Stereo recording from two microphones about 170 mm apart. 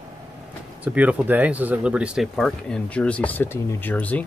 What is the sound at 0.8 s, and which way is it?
Speech, 10° right (ahead or behind).